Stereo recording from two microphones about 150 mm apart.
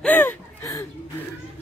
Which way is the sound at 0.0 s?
10° left (ahead or behind).